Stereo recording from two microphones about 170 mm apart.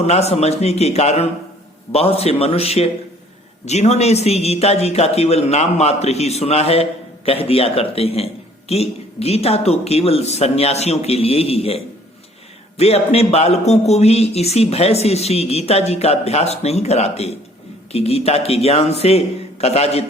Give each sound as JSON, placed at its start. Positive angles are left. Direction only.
{"t": 0.0, "sound": "speech", "side_deg": 40}